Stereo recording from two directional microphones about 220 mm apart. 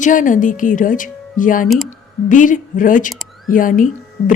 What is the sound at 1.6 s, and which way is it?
Speech, centre (ahead or behind).